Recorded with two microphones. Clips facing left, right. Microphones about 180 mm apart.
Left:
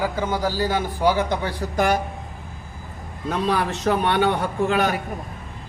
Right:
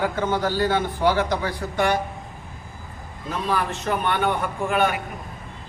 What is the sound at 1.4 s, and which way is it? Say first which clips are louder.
Speech: left 1 dB; 35° left (ahead or behind).